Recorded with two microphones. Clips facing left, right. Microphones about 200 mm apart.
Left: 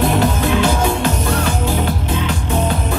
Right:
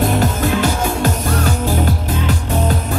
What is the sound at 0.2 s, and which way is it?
Music, 45° right (ahead or behind).